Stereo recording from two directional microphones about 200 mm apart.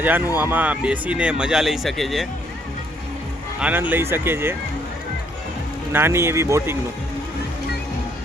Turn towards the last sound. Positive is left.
turn(degrees=-15)  # may be behind; listen again after turning